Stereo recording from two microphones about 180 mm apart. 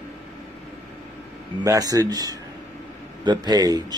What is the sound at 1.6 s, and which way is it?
Speech, 20° right (ahead or behind).